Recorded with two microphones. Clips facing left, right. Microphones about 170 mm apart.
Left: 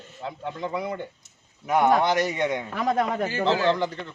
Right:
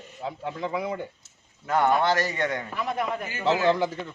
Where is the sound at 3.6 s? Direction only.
10° right (ahead or behind).